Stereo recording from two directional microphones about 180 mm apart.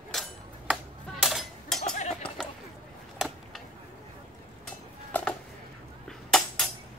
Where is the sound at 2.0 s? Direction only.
40° left (ahead or behind).